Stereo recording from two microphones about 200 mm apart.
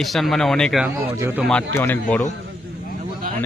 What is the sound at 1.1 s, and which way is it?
Speech, 10° right (ahead or behind).